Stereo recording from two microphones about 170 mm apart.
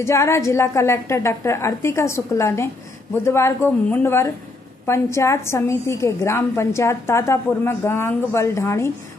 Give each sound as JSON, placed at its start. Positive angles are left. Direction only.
{"t": 0.0, "sound": "a woman's voice", "side_deg": 15}